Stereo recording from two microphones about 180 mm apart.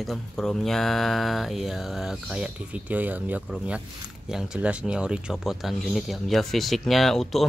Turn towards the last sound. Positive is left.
turn(degrees=0)  # may be behind; listen again after turning